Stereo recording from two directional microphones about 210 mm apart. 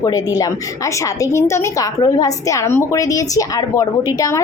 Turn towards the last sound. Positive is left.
turn(degrees=15)  # may be behind; listen again after turning